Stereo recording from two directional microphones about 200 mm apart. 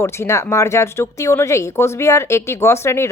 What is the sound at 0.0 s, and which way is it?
Speech, 15° left (ahead or behind).